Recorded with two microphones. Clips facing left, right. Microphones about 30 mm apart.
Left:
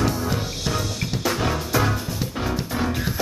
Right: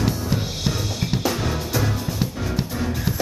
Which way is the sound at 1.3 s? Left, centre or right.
Centre.